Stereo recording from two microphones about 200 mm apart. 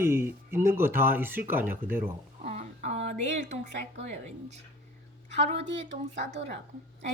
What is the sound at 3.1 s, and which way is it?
Speech, 35° right (ahead or behind).